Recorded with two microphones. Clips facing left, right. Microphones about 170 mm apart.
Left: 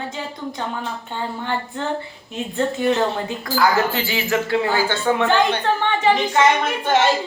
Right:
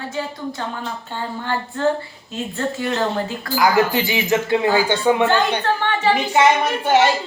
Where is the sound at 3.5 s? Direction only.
15° right (ahead or behind).